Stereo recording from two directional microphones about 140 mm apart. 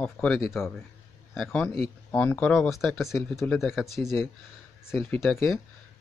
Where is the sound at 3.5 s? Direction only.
Centre (ahead or behind).